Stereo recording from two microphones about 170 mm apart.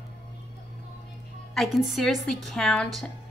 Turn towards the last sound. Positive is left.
turn(degrees=5)  # may be behind; listen again after turning